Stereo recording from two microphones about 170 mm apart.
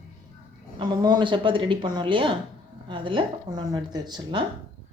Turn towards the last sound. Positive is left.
turn(degrees=-25)  # may be behind; listen again after turning